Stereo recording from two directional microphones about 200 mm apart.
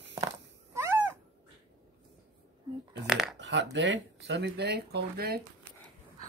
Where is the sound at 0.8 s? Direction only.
15° right (ahead or behind).